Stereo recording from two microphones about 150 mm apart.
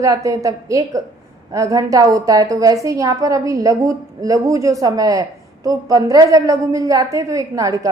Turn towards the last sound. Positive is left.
turn(degrees=-20)  # may be behind; listen again after turning